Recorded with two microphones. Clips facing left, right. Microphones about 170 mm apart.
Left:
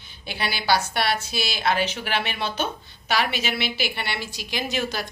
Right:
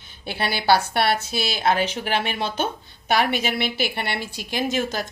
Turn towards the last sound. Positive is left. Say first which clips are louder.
# right 3 dB
turn(degrees=-45)  # may be behind; listen again after turning